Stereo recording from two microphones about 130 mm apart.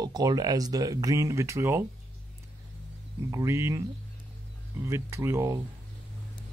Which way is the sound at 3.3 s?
20° right (ahead or behind).